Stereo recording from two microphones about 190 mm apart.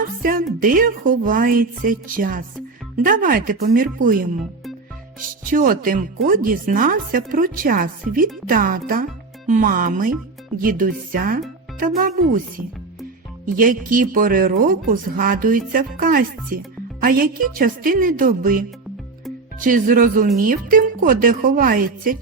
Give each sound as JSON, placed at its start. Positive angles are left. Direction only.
{"t": 0.2, "sound": "speech", "side_deg": -50}
{"t": 5.5, "sound": "speech", "side_deg": -45}
{"t": 13.4, "sound": "speech", "side_deg": -45}